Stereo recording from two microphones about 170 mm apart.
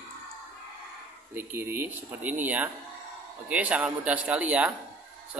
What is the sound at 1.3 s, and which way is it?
A man's voice, 10° right (ahead or behind).